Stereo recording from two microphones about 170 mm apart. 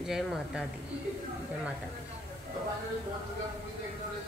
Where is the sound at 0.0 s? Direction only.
Centre (ahead or behind).